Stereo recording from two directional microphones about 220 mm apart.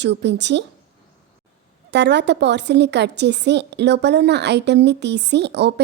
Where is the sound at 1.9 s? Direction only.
50° right (ahead or behind).